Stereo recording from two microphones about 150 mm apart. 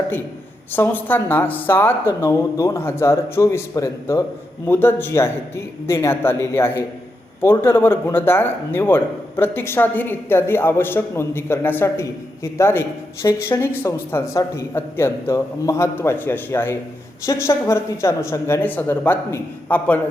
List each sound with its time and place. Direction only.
0.7 s a man's voice: 15° left (ahead or behind)